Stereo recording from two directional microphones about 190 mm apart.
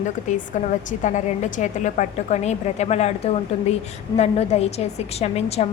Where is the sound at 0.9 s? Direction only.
40° left (ahead or behind).